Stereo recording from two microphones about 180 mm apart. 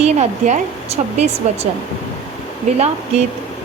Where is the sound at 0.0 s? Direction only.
40° right (ahead or behind).